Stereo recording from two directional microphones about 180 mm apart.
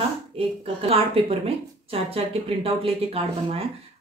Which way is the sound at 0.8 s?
30° right (ahead or behind).